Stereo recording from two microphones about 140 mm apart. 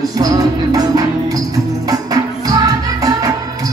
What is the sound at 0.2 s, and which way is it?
Music, 25° right (ahead or behind).